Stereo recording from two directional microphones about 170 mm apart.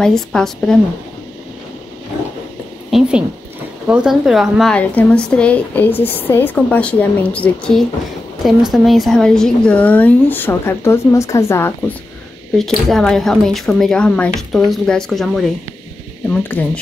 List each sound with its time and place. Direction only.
0.0 s a woman's voice: 5° left (ahead or behind)
2.9 s a sound: 5° right (ahead or behind)
3.8 s a woman's voice: 5° right (ahead or behind); by 11.7 s 15° left (ahead or behind)
12.5 s a woman's voice: centre (ahead or behind)